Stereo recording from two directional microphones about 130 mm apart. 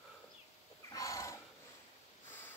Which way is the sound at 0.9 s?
25° left (ahead or behind).